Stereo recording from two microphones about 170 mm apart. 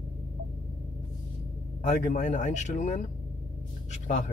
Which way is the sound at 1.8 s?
45° left (ahead or behind).